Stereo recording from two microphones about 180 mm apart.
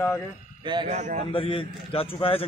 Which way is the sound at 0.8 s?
40° right (ahead or behind).